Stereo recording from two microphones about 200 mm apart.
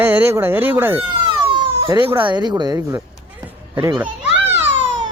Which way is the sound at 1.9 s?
20° right (ahead or behind).